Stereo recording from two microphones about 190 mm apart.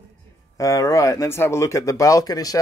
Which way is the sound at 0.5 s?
15° left (ahead or behind).